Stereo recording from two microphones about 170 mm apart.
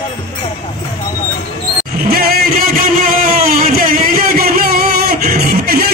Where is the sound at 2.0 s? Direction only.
60° right (ahead or behind).